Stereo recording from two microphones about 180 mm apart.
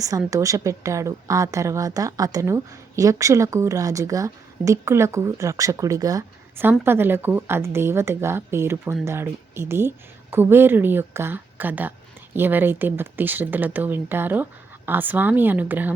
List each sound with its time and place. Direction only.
0.3 s speech: 20° right (ahead or behind)